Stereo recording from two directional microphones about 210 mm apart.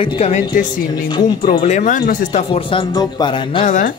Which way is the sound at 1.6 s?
35° left (ahead or behind).